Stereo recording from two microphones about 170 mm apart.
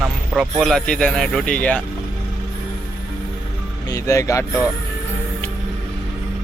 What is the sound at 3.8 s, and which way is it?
Speech, 20° left (ahead or behind).